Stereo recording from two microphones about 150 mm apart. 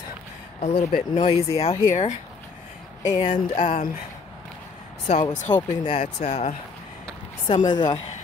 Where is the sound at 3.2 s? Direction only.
60° left (ahead or behind).